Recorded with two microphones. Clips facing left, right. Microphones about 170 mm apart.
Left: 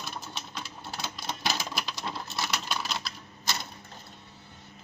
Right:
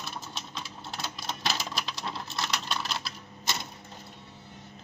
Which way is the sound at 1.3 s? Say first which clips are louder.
Left 1 dB; centre (ahead or behind).